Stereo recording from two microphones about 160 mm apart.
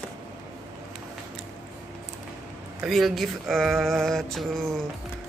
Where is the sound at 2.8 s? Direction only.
Centre (ahead or behind).